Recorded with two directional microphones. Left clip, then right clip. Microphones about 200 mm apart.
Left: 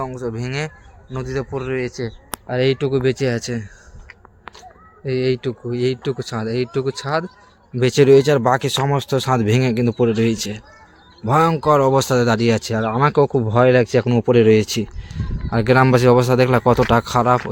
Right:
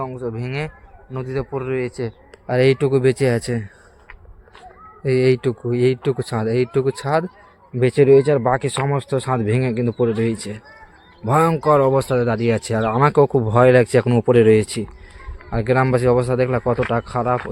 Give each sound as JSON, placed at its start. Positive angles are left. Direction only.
{"t": 0.0, "sound": "speech", "side_deg": 0}
{"t": 2.5, "sound": "speech", "side_deg": -25}
{"t": 5.0, "sound": "speech", "side_deg": -35}
{"t": 7.8, "sound": "speech", "side_deg": 0}
{"t": 15.4, "sound": "speech", "side_deg": 15}